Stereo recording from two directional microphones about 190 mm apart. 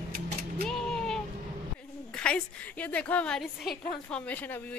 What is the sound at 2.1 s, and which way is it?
A woman's voice, 5° left (ahead or behind).